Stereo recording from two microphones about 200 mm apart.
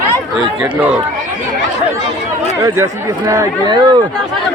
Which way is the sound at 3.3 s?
20° right (ahead or behind).